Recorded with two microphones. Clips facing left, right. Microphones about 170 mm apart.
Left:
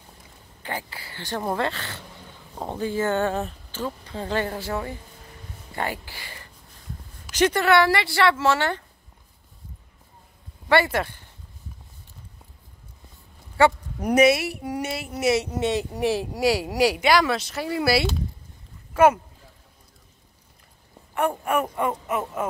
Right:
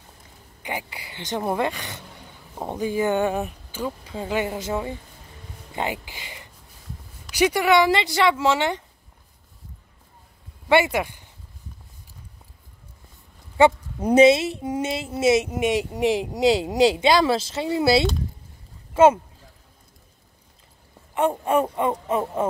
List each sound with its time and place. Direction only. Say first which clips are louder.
0.6 s speech: right 1 dB; 15° right (ahead or behind)
10.7 s speech: right 2 dB; 15° right (ahead or behind)
13.6 s speech: right 2 dB; 20° right (ahead or behind)
21.1 s speech: right 3 dB; 20° right (ahead or behind)